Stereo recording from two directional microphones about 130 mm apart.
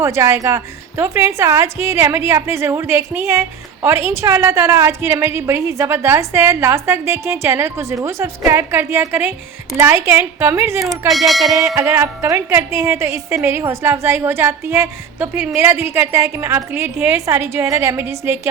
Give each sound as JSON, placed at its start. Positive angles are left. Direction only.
{"t": 0.0, "sound": "a woman's voice", "side_deg": -20}
{"t": 11.1, "sound": "music", "side_deg": 0}
{"t": 11.6, "sound": "a woman's voice", "side_deg": -20}